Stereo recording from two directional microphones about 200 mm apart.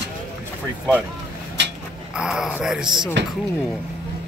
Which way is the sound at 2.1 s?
5° right (ahead or behind).